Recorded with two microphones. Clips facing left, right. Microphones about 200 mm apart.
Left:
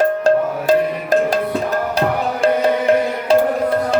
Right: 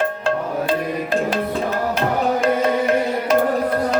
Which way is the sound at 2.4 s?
30° left (ahead or behind).